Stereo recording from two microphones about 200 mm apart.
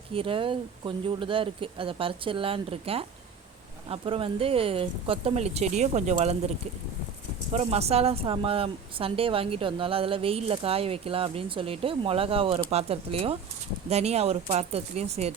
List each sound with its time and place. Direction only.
0.1 s speech: 25° right (ahead or behind)
7.5 s speech: 30° right (ahead or behind)